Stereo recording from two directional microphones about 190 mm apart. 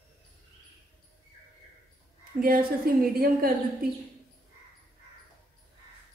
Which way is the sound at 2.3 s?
50° right (ahead or behind).